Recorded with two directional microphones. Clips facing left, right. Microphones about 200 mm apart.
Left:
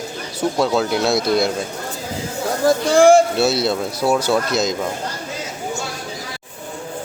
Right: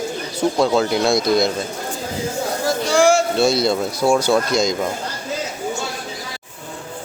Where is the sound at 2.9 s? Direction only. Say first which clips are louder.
Left 4 dB; 55° left (ahead or behind).